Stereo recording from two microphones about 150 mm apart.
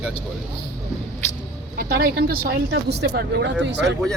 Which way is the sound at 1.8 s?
85° right.